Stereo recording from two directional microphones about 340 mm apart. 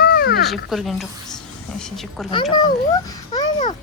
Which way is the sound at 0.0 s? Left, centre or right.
Left.